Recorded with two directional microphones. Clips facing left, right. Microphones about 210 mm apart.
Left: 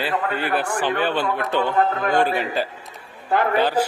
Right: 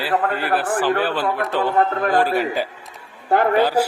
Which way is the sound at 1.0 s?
5° right (ahead or behind).